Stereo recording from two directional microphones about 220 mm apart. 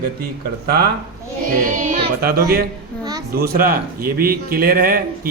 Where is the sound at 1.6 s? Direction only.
35° right (ahead or behind).